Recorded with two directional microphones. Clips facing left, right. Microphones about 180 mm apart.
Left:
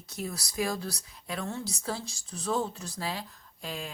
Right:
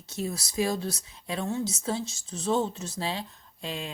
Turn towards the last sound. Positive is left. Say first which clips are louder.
# right 3 dB
turn(degrees=-25)  # may be behind; listen again after turning